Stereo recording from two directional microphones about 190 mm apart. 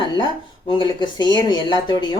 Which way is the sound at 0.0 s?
25° left (ahead or behind).